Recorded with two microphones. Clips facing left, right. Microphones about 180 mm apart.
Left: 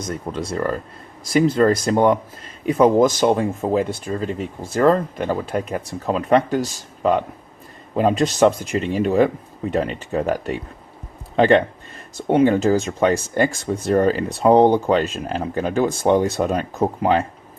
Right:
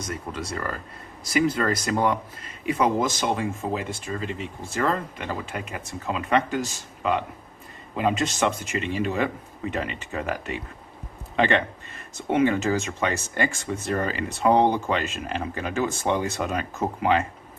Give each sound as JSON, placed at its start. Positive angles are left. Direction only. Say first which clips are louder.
{"t": 0.3, "sound": "speech", "louder": "left 10 dB", "side_deg": 35}
{"t": 2.7, "sound": "speech", "louder": "left 9 dB", "side_deg": 45}